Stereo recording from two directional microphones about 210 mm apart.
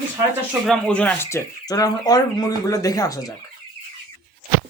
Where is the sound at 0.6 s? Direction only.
5° left (ahead or behind).